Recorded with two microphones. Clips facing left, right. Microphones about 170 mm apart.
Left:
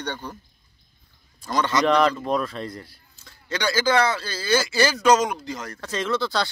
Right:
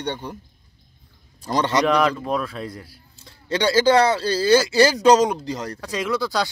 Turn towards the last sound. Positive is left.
turn(degrees=-10)  # may be behind; listen again after turning